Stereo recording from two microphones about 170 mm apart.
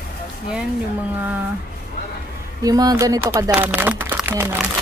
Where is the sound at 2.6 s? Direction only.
20° right (ahead or behind).